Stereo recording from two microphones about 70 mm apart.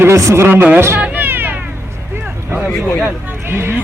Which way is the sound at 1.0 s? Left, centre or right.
Right.